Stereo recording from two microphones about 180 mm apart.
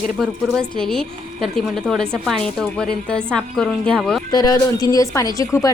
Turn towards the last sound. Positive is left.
turn(degrees=15)  # may be behind; listen again after turning